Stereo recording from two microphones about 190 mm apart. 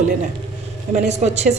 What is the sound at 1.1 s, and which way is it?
Speech, 35° right (ahead or behind).